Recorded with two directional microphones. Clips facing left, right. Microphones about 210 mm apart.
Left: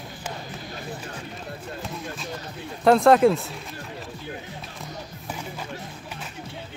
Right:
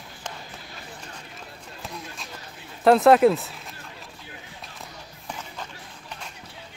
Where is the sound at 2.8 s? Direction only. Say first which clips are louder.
Even; centre (ahead or behind).